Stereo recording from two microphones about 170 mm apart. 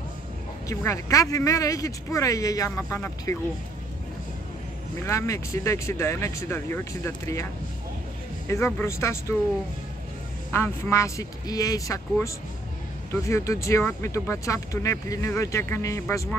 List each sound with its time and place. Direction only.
0.7 s speech: 20° left (ahead or behind)
5.0 s speech: 15° left (ahead or behind)
8.5 s speech: 15° left (ahead or behind)
10.5 s speech: 15° left (ahead or behind)